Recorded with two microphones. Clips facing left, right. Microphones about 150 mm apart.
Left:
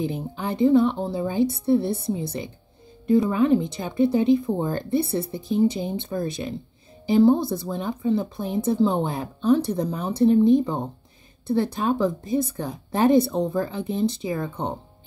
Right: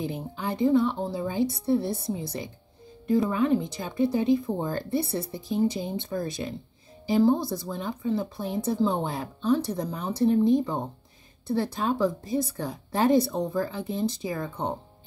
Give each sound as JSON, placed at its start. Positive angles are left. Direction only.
{"t": 0.0, "sound": "speech", "side_deg": 20}
{"t": 1.7, "sound": "a woman's voice", "side_deg": 60}
{"t": 2.0, "sound": "speech", "side_deg": 25}